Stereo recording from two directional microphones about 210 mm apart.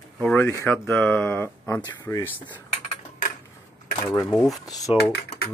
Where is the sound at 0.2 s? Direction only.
10° left (ahead or behind).